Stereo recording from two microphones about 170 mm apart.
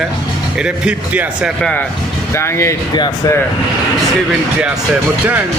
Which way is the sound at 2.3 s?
15° left (ahead or behind).